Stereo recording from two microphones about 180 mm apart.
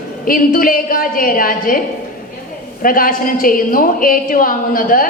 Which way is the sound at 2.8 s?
50° left (ahead or behind).